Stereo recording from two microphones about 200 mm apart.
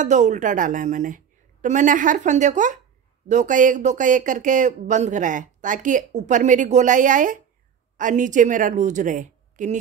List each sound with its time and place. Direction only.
0.0 s speech: 35° right (ahead or behind)